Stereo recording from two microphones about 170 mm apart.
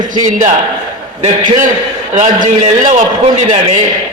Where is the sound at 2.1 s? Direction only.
45° right (ahead or behind).